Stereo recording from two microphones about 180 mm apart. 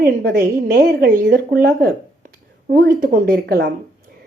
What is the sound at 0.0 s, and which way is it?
Speech, 60° right (ahead or behind).